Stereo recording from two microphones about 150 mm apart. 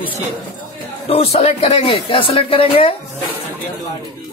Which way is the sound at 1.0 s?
40° left (ahead or behind).